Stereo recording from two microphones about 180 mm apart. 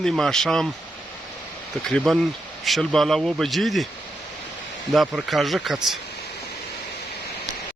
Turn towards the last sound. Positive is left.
turn(degrees=0)  # may be behind; listen again after turning